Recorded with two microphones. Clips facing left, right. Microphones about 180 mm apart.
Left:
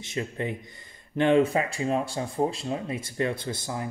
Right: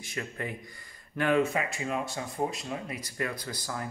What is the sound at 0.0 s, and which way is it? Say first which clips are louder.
Speech: left 5 dB; 25° left (ahead or behind).